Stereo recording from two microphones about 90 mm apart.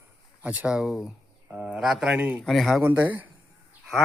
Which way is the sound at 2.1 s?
15° right (ahead or behind).